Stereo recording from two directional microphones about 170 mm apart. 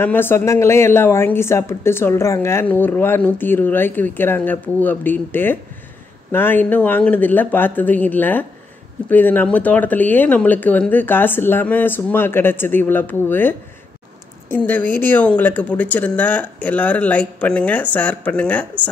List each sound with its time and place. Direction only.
0.0 s speech: 10° left (ahead or behind)